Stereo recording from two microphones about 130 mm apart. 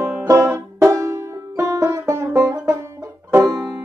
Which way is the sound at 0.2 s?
20° right (ahead or behind).